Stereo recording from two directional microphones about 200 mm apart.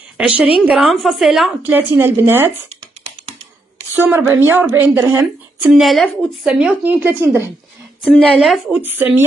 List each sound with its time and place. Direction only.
0.2 s speech: 5° right (ahead or behind)
4.0 s speech: 10° right (ahead or behind)
5.8 s speech: centre (ahead or behind)
8.0 s speech: centre (ahead or behind)